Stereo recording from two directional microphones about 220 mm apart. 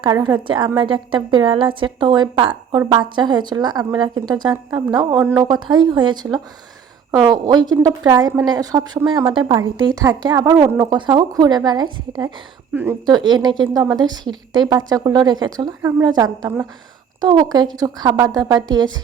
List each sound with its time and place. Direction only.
0.0 s a woman's voice: 20° right (ahead or behind)